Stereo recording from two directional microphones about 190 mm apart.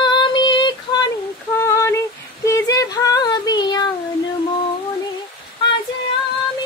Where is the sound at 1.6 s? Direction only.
15° left (ahead or behind).